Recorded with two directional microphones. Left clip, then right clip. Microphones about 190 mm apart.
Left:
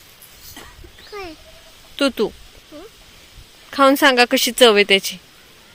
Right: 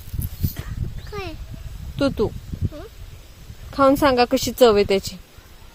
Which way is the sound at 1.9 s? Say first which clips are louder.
Left 2 dB; 5° right (ahead or behind).